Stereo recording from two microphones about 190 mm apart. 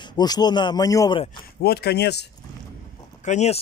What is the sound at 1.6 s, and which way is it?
Speech, 55° left (ahead or behind).